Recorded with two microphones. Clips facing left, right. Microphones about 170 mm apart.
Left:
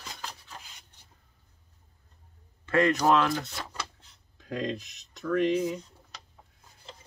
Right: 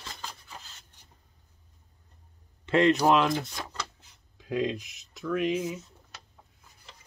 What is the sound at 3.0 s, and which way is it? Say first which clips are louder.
Speech: right 1 dB; 15° right (ahead or behind).